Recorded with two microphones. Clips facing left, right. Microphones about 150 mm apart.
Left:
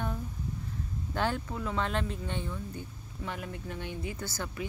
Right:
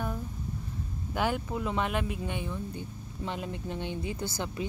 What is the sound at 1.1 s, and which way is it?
Speech, 10° right (ahead or behind).